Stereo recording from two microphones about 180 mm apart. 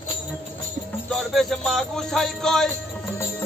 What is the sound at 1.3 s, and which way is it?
Music, centre (ahead or behind).